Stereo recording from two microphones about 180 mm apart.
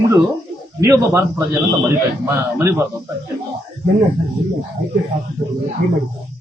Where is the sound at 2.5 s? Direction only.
15° right (ahead or behind).